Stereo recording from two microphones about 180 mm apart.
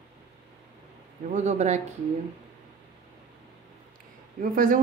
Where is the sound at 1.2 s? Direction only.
40° right (ahead or behind).